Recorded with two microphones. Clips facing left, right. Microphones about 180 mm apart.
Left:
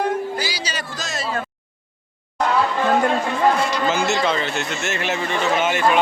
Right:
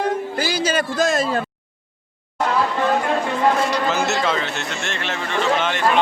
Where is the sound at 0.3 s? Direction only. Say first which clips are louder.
Right 7 dB; 50° right (ahead or behind).